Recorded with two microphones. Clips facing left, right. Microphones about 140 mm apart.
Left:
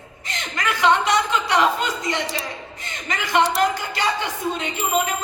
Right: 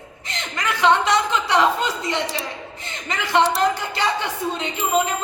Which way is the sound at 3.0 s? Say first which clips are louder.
Right 1 dB; 25° right (ahead or behind).